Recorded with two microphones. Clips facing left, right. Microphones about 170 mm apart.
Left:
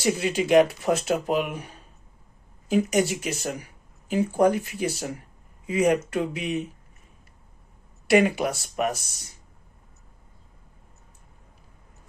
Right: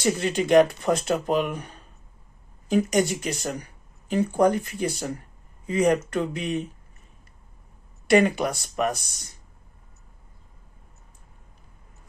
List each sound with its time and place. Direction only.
0.0 s speech: 5° left (ahead or behind)
8.1 s speech: 5° left (ahead or behind)